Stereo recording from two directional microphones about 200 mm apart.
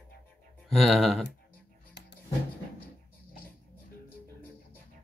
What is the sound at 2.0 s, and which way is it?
Music, 60° left (ahead or behind).